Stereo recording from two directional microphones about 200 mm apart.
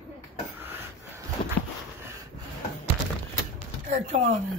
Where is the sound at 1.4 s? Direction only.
30° left (ahead or behind).